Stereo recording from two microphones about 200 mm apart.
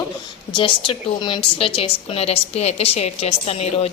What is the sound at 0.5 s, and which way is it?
A woman's voice, 25° left (ahead or behind).